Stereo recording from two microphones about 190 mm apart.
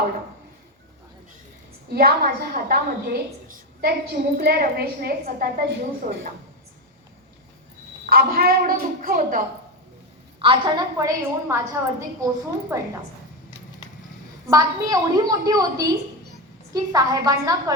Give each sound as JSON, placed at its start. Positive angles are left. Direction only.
{"t": 1.9, "sound": "a woman's voice", "side_deg": -55}
{"t": 8.1, "sound": "a woman's voice", "side_deg": -55}
{"t": 10.4, "sound": "a woman's voice", "side_deg": -30}
{"t": 11.0, "sound": "a woman's voice", "side_deg": -15}
{"t": 14.4, "sound": "a woman's voice", "side_deg": -20}